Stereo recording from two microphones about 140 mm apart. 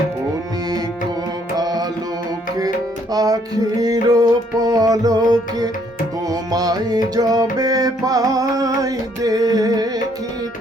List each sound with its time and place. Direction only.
1.5 s music: 30° right (ahead or behind)
3.1 s music: 25° right (ahead or behind)